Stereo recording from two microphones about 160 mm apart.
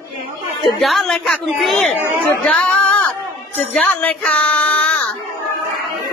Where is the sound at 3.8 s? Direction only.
10° left (ahead or behind).